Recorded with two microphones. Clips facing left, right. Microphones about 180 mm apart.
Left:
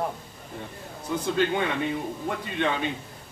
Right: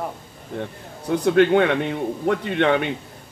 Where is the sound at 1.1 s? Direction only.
65° right (ahead or behind).